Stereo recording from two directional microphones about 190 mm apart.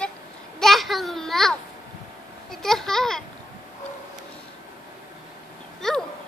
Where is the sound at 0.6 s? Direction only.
Centre (ahead or behind).